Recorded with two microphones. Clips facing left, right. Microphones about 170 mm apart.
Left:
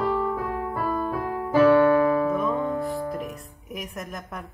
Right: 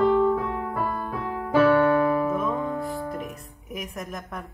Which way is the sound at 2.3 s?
Centre (ahead or behind).